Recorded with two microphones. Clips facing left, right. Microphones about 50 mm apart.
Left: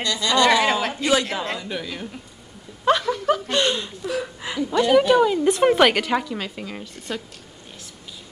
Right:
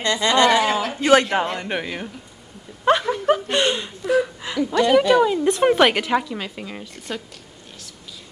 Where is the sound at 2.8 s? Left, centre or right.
Right.